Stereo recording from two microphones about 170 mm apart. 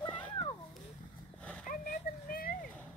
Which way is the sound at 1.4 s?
5° left (ahead or behind).